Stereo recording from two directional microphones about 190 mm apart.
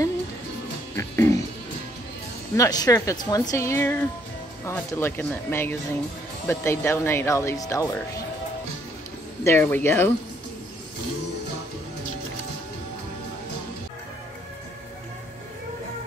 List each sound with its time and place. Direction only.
0.9 s music: 15° left (ahead or behind)
2.5 s speech: 20° left (ahead or behind)
9.4 s speech: 10° left (ahead or behind)